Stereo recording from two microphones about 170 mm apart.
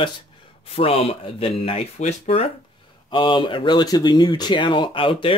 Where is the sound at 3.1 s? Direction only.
30° left (ahead or behind).